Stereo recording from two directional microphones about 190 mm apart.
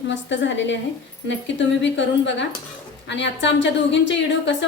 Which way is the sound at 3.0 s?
70° left (ahead or behind).